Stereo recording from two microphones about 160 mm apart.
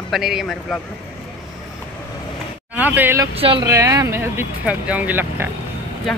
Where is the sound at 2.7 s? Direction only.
10° right (ahead or behind).